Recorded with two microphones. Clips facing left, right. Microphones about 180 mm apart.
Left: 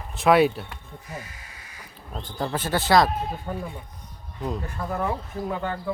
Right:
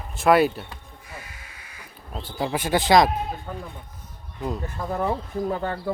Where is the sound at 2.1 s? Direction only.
10° right (ahead or behind).